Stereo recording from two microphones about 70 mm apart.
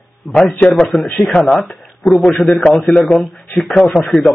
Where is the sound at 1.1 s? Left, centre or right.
Centre.